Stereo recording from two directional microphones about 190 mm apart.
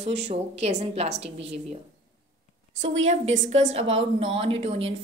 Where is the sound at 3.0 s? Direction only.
35° right (ahead or behind).